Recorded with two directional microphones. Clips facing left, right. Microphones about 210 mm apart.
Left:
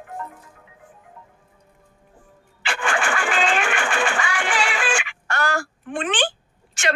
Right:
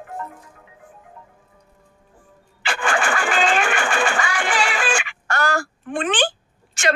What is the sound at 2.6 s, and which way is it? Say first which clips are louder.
Vehicle: right 2 dB; 40° right (ahead or behind).